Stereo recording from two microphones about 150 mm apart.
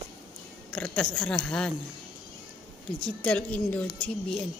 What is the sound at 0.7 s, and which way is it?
A woman's voice, 5° left (ahead or behind).